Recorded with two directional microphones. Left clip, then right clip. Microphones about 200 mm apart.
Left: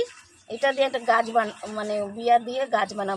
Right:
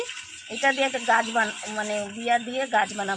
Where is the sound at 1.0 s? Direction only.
35° left (ahead or behind).